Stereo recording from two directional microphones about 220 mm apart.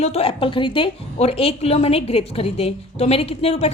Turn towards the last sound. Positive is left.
turn(degrees=30)  # may be behind; listen again after turning